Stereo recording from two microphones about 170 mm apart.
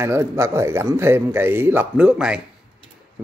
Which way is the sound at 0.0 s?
15° right (ahead or behind).